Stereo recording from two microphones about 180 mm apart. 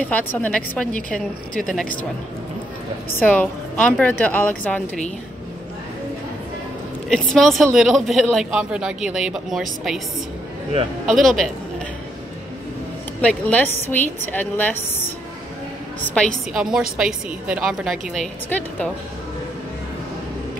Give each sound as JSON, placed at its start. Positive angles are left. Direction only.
{"t": 0.0, "sound": "a woman's voice", "side_deg": 10}
{"t": 3.1, "sound": "a woman's voice", "side_deg": 10}
{"t": 7.1, "sound": "a woman's voice", "side_deg": 0}
{"t": 11.1, "sound": "a woman's voice", "side_deg": 0}
{"t": 13.2, "sound": "a woman's voice", "side_deg": 5}